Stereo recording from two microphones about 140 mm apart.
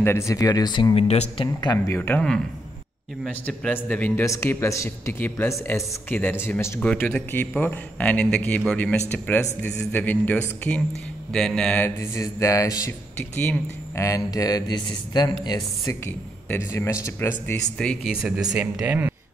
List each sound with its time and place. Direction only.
0.0 s speech: 20° left (ahead or behind)
0.9 s speech: 50° left (ahead or behind)
1.4 s speech: 30° left (ahead or behind)
1.9 s speech: 10° left (ahead or behind)
12.0 s speech: 20° left (ahead or behind)
13.2 s speech: 10° left (ahead or behind)
13.9 s speech: 25° left (ahead or behind)
17.7 s speech: 5° left (ahead or behind)
18.2 s speech: 5° right (ahead or behind)